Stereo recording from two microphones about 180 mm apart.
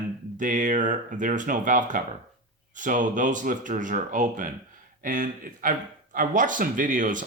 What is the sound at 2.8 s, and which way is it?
Speech, 45° right (ahead or behind).